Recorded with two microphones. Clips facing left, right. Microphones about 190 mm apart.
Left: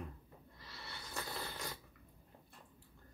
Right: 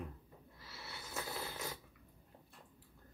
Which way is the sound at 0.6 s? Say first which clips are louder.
Right 1 dB; 5° right (ahead or behind).